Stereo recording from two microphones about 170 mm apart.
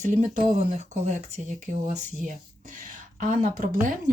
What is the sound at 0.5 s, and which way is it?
Speech, 45° right (ahead or behind).